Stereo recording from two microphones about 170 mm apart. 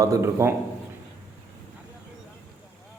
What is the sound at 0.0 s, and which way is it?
Speech, 20° right (ahead or behind).